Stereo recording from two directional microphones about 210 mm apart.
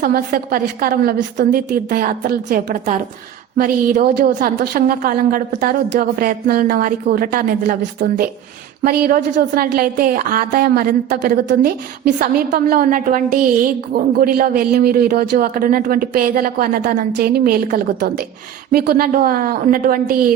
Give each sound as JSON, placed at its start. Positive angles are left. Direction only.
{"t": 0.0, "sound": "a woman's voice", "side_deg": -45}